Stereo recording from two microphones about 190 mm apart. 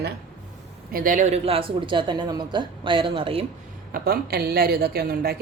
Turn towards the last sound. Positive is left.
turn(degrees=-50)  # may be behind; listen again after turning